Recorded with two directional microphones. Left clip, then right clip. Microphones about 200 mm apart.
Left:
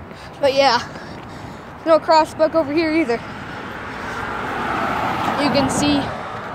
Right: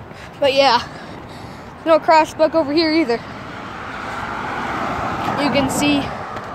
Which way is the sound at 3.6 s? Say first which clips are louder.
Right 1 dB; 45° right (ahead or behind).